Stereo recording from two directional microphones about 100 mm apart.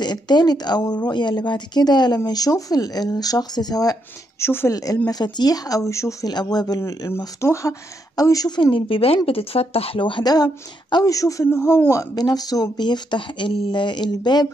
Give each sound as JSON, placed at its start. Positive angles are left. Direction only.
{"t": 0.0, "sound": "speech", "side_deg": 45}
{"t": 4.4, "sound": "speech", "side_deg": 25}
{"t": 4.7, "sound": "speech", "side_deg": 35}
{"t": 8.7, "sound": "speech", "side_deg": 65}
{"t": 10.3, "sound": "speech", "side_deg": 40}
{"t": 11.9, "sound": "speech", "side_deg": 35}